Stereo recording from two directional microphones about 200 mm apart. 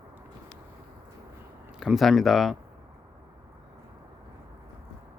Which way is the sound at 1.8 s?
Centre (ahead or behind).